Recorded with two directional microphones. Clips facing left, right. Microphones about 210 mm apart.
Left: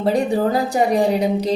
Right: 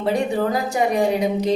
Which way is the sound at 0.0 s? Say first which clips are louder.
Left 3 dB; 35° left (ahead or behind).